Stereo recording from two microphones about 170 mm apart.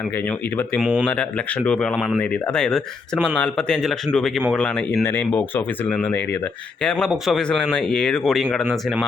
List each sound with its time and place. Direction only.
0.8 s speech: 5° right (ahead or behind)
1.6 s speech: 5° left (ahead or behind)